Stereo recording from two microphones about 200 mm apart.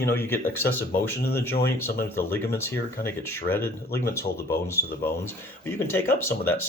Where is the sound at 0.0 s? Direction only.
10° left (ahead or behind).